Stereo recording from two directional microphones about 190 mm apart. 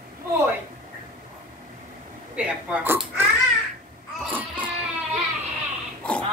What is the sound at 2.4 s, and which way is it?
Speech, 10° right (ahead or behind).